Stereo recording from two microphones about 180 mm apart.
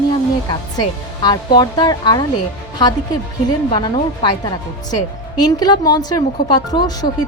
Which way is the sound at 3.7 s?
20° left (ahead or behind).